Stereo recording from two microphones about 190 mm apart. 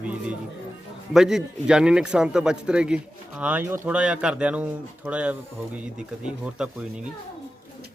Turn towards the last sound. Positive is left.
turn(degrees=-5)  # may be behind; listen again after turning